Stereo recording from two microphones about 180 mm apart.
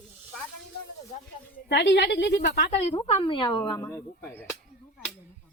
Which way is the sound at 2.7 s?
35° left (ahead or behind).